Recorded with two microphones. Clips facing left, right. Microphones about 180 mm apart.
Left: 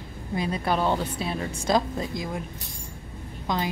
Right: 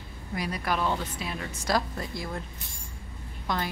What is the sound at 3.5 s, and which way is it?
Speech, 20° left (ahead or behind).